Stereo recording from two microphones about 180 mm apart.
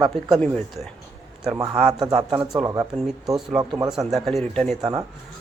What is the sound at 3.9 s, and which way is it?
Speech, centre (ahead or behind).